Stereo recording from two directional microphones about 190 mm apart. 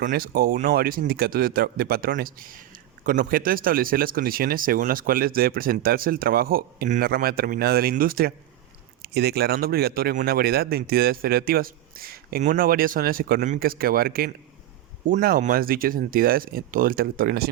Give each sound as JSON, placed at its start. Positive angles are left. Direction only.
{"t": 0.0, "sound": "speech", "side_deg": -50}